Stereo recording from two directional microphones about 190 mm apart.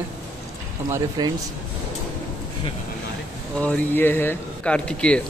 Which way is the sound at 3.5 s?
10° left (ahead or behind).